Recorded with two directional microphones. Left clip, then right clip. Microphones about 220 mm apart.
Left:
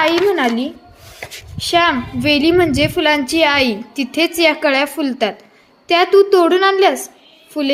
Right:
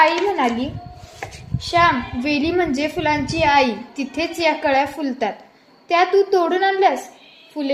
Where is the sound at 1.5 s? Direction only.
45° left (ahead or behind).